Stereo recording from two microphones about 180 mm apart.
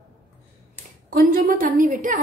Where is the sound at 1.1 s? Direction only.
50° right (ahead or behind).